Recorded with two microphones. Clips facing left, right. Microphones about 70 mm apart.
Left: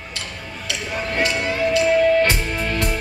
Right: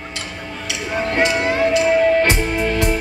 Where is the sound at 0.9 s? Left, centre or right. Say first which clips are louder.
Right 4 dB; right.